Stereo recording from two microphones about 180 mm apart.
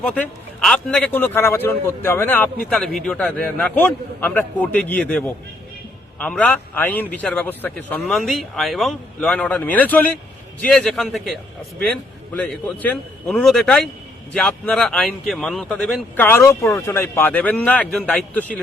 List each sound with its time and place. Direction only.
0.0 s a man's voice: 5° left (ahead or behind)